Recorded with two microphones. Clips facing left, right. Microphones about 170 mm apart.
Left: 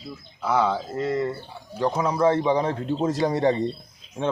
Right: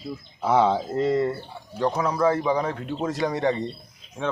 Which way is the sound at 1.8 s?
10° left (ahead or behind).